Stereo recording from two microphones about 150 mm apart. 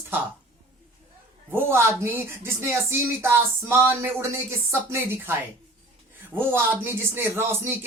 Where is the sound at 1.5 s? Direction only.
15° right (ahead or behind).